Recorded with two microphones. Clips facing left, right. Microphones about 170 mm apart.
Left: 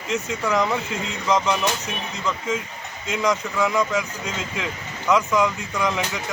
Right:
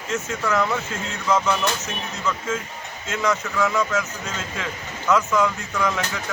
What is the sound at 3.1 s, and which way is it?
Speech, 15° left (ahead or behind).